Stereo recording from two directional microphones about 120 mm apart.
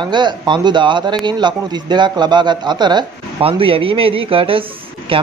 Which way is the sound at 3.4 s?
50° right (ahead or behind).